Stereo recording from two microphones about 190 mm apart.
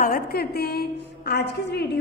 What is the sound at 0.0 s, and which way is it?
A woman's voice, 50° left (ahead or behind).